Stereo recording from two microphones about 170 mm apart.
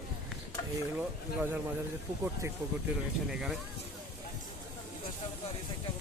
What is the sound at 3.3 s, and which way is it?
Speech, 5° right (ahead or behind).